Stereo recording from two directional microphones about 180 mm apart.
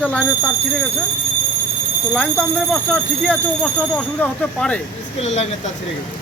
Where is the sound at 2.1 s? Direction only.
5° left (ahead or behind).